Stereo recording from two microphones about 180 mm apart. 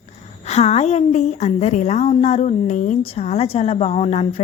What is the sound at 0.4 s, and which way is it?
A woman's voice, 40° left (ahead or behind).